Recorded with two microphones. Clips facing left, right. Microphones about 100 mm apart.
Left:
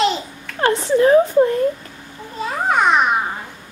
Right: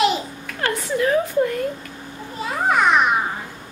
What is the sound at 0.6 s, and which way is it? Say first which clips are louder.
A child's voice: left 7 dB; 30° left (ahead or behind).